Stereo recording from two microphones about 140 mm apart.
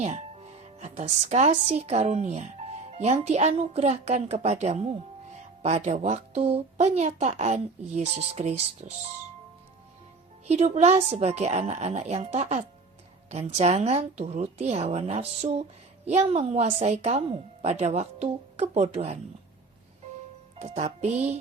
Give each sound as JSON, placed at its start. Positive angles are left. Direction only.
{"t": 0.8, "sound": "speech", "side_deg": -55}
{"t": 10.4, "sound": "speech", "side_deg": -50}
{"t": 20.6, "sound": "speech", "side_deg": -50}